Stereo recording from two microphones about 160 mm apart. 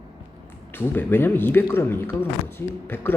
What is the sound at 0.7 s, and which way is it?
Speech, 15° left (ahead or behind).